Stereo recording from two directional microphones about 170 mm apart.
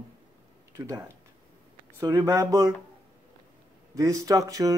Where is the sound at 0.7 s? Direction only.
20° right (ahead or behind).